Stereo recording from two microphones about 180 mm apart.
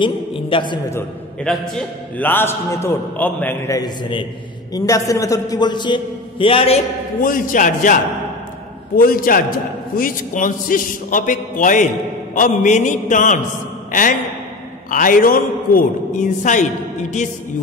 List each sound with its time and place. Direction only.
0.0 s a sound: 30° left (ahead or behind)
0.8 s a man's voice: 15° left (ahead or behind); by 6.8 s 30° left (ahead or behind)
7.2 s a man's voice: 50° left (ahead or behind)
14.9 s a man's voice: 50° left (ahead or behind)